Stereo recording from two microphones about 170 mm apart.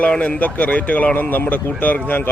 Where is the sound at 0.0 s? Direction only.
10° left (ahead or behind).